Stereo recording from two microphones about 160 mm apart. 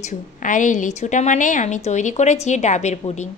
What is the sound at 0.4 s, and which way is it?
A woman's voice, 55° left (ahead or behind).